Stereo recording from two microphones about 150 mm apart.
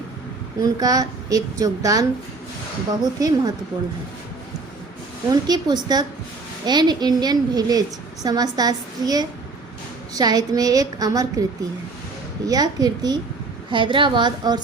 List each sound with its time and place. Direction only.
0.6 s a woman's voice: 25° right (ahead or behind)
5.3 s a woman's voice: 30° right (ahead or behind)
12.5 s a woman's voice: 25° right (ahead or behind)